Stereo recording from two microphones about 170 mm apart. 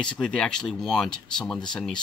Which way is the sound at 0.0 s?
5° left (ahead or behind).